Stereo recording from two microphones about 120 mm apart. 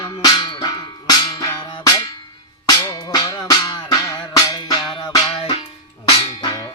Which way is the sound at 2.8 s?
35° left (ahead or behind).